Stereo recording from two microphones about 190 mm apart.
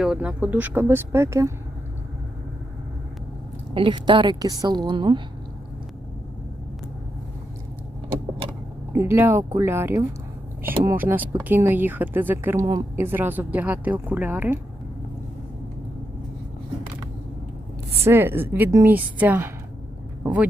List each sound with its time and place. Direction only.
0.0 s a woman's voice: 5° right (ahead or behind)
3.8 s a woman's voice: 25° right (ahead or behind)
8.9 s a woman's voice: 15° right (ahead or behind)
18.0 s a woman's voice: 10° right (ahead or behind)